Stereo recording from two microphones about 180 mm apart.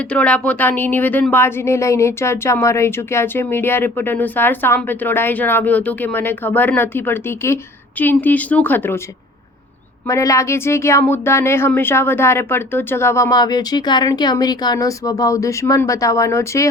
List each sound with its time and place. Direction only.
0.0 s speech: 5° left (ahead or behind)
10.1 s speech: 15° left (ahead or behind)